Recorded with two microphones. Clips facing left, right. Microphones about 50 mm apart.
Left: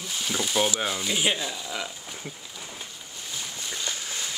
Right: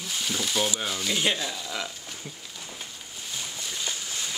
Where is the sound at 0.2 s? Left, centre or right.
Centre.